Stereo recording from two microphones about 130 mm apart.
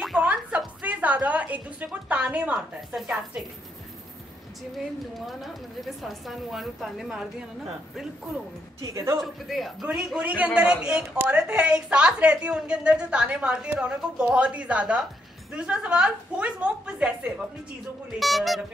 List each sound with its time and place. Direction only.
0.0 s music: 5° right (ahead or behind)
5.1 s a woman's voice: centre (ahead or behind)
8.8 s a woman's voice: 25° right (ahead or behind)
9.2 s a woman's voice: centre (ahead or behind)